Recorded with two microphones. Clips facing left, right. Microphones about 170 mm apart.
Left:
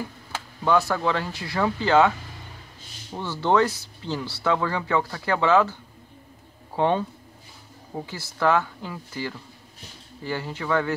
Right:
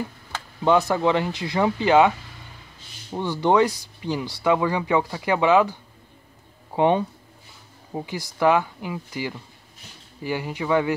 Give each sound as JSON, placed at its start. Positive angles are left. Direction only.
{"t": 0.7, "sound": "speech", "side_deg": -20}